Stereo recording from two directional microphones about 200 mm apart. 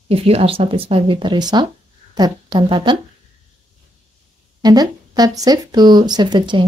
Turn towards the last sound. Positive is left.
turn(degrees=-25)  # may be behind; listen again after turning